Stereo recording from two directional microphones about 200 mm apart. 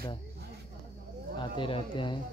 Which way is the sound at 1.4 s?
25° left (ahead or behind).